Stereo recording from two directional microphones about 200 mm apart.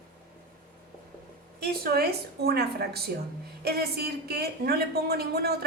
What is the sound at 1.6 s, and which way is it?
Speech, 50° right (ahead or behind).